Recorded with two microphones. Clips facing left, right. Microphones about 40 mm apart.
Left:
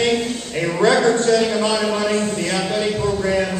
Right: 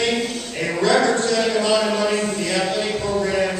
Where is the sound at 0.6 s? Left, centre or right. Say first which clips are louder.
Left 2 dB; centre.